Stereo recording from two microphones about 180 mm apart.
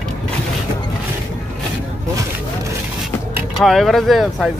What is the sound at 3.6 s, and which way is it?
Speech, centre (ahead or behind).